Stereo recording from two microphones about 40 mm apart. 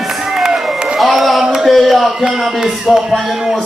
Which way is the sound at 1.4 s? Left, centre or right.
Centre.